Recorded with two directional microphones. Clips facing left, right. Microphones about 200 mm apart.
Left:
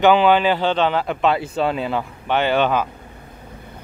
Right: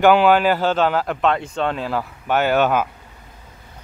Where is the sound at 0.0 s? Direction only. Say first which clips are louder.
Right 1 dB; 5° right (ahead or behind).